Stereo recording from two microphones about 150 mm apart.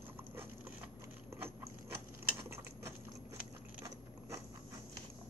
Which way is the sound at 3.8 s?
20° right (ahead or behind).